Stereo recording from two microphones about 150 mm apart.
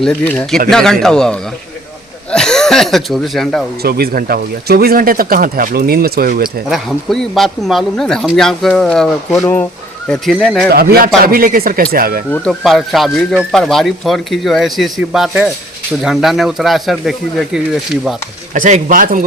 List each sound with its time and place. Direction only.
0.0 s speech: 5° left (ahead or behind)
3.8 s speech: 90° right
6.7 s speech: centre (ahead or behind)
10.7 s speech: 90° right
12.3 s speech: centre (ahead or behind)
18.5 s speech: 60° right (ahead or behind)